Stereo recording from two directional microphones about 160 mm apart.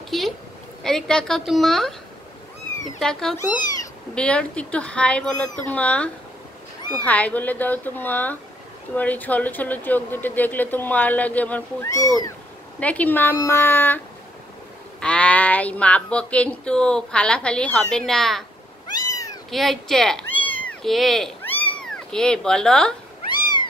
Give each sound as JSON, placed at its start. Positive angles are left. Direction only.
{"t": 0.1, "sound": "a sound", "side_deg": 0}
{"t": 0.8, "sound": "a woman's voice", "side_deg": 5}
{"t": 3.0, "sound": "a woman's voice", "side_deg": 5}
{"t": 7.1, "sound": "speech", "side_deg": 10}
{"t": 18.9, "sound": "cat", "side_deg": 25}
{"t": 19.5, "sound": "cat", "side_deg": 0}
{"t": 20.9, "sound": "a woman's voice", "side_deg": 0}
{"t": 21.5, "sound": "cat", "side_deg": 10}